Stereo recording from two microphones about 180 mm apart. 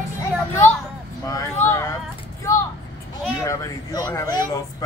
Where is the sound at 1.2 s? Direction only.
15° left (ahead or behind).